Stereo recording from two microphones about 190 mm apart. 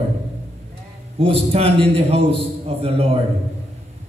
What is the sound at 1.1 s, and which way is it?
A man's voice, 30° right (ahead or behind).